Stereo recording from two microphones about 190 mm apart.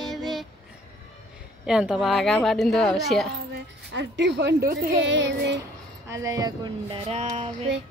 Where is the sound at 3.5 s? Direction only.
65° right (ahead or behind).